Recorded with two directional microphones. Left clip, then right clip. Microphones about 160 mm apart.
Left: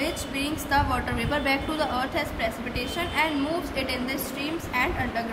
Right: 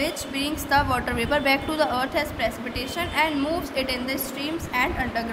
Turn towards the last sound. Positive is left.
turn(degrees=-40)  # may be behind; listen again after turning